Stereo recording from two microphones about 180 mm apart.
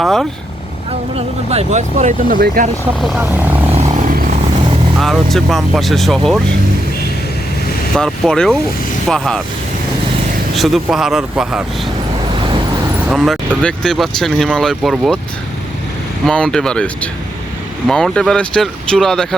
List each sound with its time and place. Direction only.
0.0 s speech: centre (ahead or behind)
1.5 s speech: 40° right (ahead or behind)
4.9 s speech: centre (ahead or behind)
7.9 s speech: 5° left (ahead or behind)
10.5 s speech: centre (ahead or behind)
13.1 s speech: centre (ahead or behind)
16.2 s speech: 5° left (ahead or behind)